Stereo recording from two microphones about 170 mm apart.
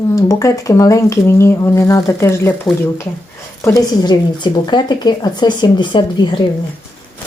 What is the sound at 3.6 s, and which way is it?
Speech, 20° left (ahead or behind).